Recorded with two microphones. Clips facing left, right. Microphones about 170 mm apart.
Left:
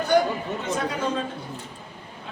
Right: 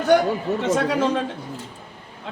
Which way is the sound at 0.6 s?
85° right.